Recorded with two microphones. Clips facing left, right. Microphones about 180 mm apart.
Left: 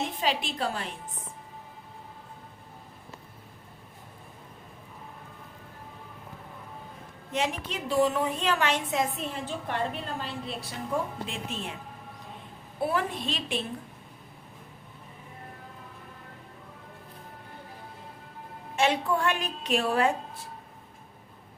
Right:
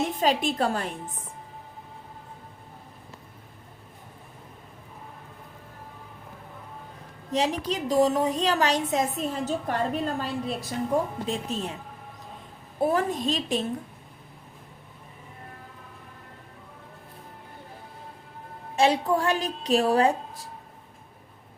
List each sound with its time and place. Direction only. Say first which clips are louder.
0.2 s a woman's voice: right 6 dB; 45° right (ahead or behind)
7.3 s a woman's voice: right 5 dB; 35° right (ahead or behind)
12.8 s a woman's voice: right 5 dB; 40° right (ahead or behind)
18.8 s a woman's voice: right 3 dB; 35° right (ahead or behind)